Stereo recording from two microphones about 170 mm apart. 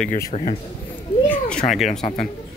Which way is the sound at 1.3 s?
5° left (ahead or behind).